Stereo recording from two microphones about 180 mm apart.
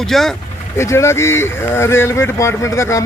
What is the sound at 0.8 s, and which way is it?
Speech, 15° left (ahead or behind).